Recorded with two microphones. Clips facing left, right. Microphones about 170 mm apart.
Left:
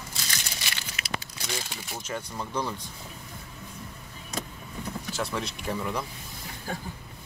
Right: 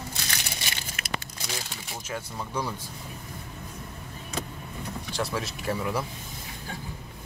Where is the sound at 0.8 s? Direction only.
50° right (ahead or behind).